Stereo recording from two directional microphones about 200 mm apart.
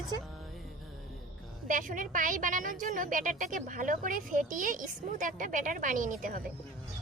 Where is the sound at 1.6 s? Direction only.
40° right (ahead or behind).